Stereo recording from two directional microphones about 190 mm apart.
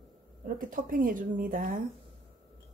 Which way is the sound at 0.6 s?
45° right (ahead or behind).